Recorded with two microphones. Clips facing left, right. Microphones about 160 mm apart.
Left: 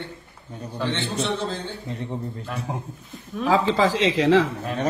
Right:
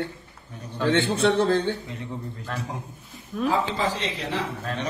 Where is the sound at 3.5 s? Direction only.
90° left.